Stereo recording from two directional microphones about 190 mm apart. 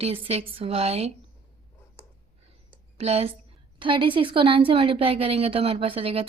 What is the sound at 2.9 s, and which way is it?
Speech, 30° right (ahead or behind).